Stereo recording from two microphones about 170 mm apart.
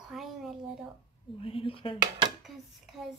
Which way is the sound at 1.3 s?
35° left (ahead or behind).